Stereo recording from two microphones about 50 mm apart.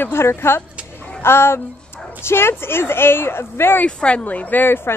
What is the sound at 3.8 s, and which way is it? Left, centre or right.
Speech, left.